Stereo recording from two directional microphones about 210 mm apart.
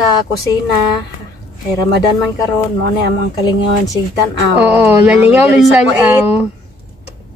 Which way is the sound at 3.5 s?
15° left (ahead or behind).